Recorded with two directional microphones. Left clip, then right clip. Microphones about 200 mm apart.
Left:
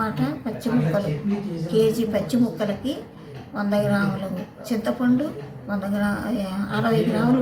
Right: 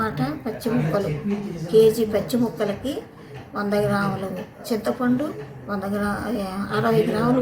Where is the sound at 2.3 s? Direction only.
25° right (ahead or behind).